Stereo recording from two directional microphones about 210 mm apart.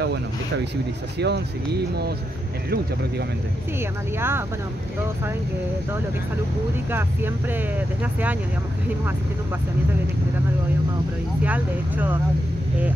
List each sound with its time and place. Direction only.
1.2 s speech: 50° right (ahead or behind)
4.2 s speech: 10° right (ahead or behind)
6.9 s speech: 10° right (ahead or behind)
11.4 s speech: 10° right (ahead or behind)